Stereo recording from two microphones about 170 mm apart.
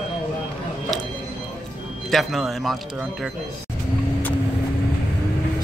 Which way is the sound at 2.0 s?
Centre (ahead or behind).